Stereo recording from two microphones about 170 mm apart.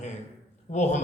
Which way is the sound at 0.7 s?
45° left (ahead or behind).